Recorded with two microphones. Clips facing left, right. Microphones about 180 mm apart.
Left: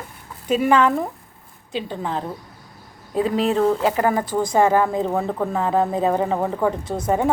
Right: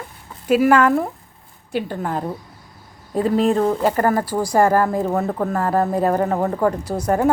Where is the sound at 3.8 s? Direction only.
10° left (ahead or behind).